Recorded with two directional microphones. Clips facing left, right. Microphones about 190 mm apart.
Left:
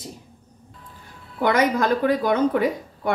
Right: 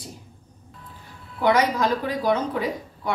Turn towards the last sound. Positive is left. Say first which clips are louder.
# left 5 dB
turn(degrees=55)  # may be behind; listen again after turning